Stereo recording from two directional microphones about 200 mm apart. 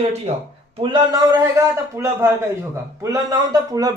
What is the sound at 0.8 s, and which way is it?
A man's voice, 20° right (ahead or behind).